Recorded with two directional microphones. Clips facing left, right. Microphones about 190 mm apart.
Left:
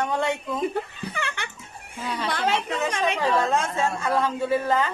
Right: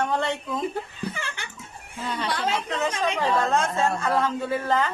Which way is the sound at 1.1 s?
65° left (ahead or behind).